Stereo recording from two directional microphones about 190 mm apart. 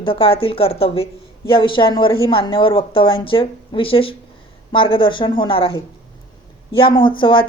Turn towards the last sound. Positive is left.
turn(degrees=25)  # may be behind; listen again after turning